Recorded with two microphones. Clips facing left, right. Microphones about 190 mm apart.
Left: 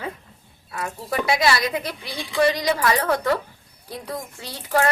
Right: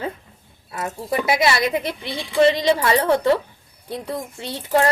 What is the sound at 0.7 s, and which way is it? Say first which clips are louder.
A child's voice: right 3 dB; 20° right (ahead or behind).